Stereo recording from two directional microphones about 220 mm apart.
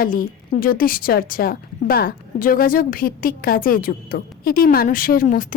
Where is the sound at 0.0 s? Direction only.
40° left (ahead or behind).